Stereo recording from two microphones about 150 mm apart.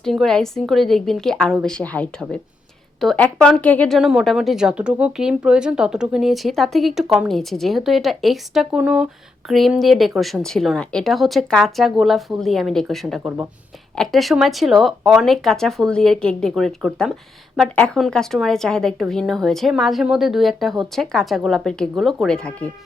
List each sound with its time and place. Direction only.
0.0 s a woman's voice: centre (ahead or behind)